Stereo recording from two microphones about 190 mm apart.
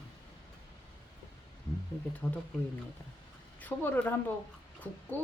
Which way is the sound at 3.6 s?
10° left (ahead or behind).